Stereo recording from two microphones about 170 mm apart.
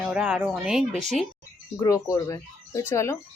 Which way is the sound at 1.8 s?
20° left (ahead or behind).